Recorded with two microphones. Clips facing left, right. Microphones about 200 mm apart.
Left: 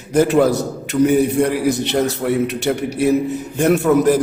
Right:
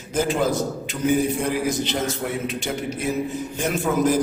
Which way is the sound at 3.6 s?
65° left (ahead or behind).